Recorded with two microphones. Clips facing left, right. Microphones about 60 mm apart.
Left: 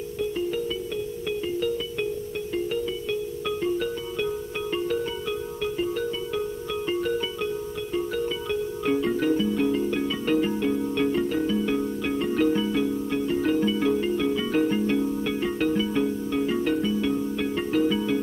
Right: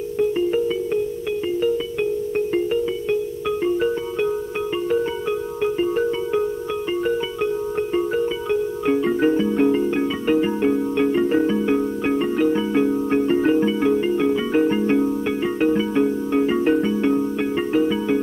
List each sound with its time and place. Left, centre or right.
2.7 s music: right
5.6 s music: right
12.4 s music: centre
12.7 s music: right